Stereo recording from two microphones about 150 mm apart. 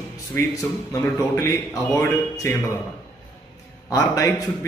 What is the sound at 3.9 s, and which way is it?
Speech, 20° left (ahead or behind).